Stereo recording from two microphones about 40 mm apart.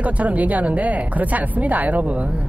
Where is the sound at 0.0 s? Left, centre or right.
Right.